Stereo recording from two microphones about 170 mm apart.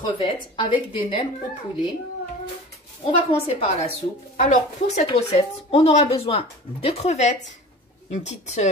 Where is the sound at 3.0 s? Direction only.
35° left (ahead or behind).